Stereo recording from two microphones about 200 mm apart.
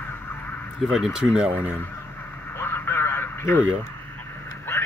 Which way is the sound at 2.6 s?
10° left (ahead or behind).